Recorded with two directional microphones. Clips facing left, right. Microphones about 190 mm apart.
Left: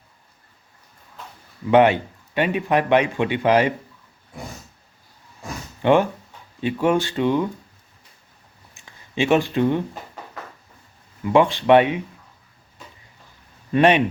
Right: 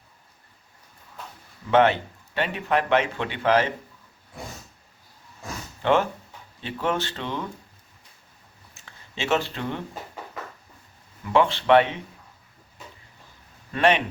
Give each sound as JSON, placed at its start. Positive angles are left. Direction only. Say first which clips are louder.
{"t": 1.7, "sound": "a man's voice", "louder": "left 4 dB", "side_deg": 15}
{"t": 5.8, "sound": "a man's voice", "louder": "left 5 dB", "side_deg": 15}
{"t": 8.7, "sound": "a sound", "louder": "left 12 dB", "side_deg": 15}
{"t": 11.3, "sound": "a man's voice", "louder": "left 4 dB", "side_deg": 15}
{"t": 13.7, "sound": "a man's voice", "louder": "left 5 dB", "side_deg": 15}